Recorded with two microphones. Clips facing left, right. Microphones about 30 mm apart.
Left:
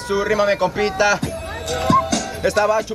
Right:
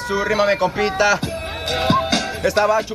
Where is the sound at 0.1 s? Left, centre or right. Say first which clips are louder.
Even; centre.